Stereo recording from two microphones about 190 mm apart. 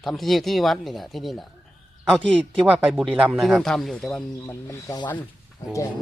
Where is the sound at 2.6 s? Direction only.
5° right (ahead or behind).